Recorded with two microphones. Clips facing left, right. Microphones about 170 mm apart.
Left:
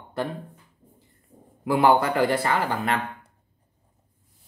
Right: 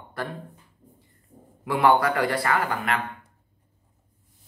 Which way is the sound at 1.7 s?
25° left (ahead or behind).